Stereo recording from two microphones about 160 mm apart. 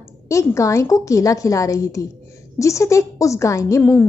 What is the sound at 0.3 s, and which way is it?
A woman's voice, 20° left (ahead or behind).